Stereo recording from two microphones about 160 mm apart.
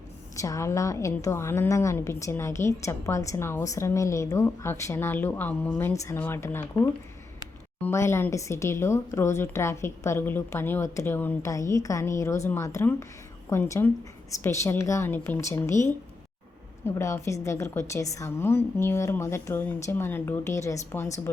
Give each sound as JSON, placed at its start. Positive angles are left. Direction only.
{"t": 0.3, "sound": "a woman's voice", "side_deg": 20}
{"t": 7.8, "sound": "a woman's voice", "side_deg": 15}
{"t": 16.8, "sound": "a woman's voice", "side_deg": 20}